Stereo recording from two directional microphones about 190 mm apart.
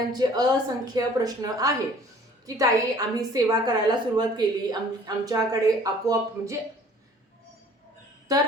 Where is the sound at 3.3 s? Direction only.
20° right (ahead or behind).